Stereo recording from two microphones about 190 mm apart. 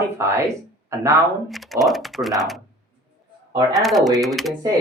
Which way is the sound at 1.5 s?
Centre (ahead or behind).